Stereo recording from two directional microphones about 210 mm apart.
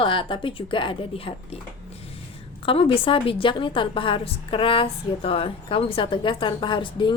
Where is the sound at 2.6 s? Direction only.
25° left (ahead or behind).